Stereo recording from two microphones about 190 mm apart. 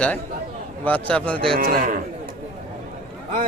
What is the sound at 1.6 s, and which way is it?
Speech, 45° right (ahead or behind).